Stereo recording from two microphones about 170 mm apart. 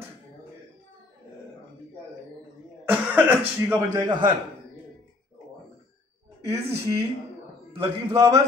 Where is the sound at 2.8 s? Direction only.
10° right (ahead or behind).